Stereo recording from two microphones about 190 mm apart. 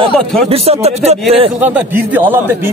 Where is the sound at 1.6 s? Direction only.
10° right (ahead or behind).